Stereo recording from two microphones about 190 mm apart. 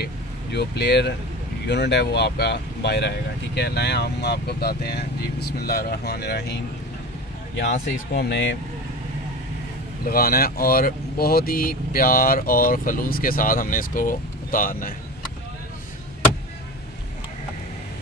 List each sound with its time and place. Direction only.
0.0 s speech: 60° left (ahead or behind)
10.0 s speech: 50° left (ahead or behind)